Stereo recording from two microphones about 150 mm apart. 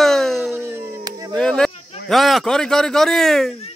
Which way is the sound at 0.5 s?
15° right (ahead or behind).